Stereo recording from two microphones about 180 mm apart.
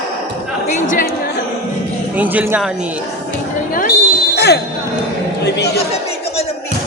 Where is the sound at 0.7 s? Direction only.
45° left (ahead or behind).